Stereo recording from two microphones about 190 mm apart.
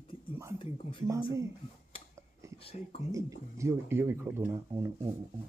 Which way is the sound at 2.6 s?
30° left (ahead or behind).